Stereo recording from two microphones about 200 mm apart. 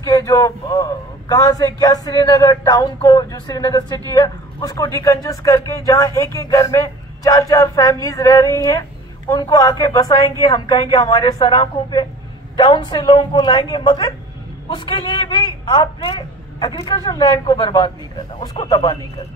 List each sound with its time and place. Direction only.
0.0 s a man's voice: 15° left (ahead or behind)